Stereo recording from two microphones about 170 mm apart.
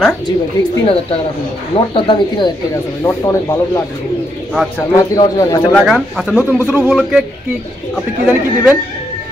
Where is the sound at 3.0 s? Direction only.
20° left (ahead or behind).